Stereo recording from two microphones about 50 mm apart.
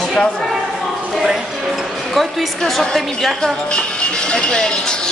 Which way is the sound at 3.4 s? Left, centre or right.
Left.